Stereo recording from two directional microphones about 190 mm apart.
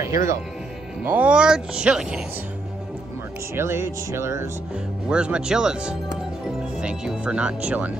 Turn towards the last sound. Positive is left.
turn(degrees=-5)  # may be behind; listen again after turning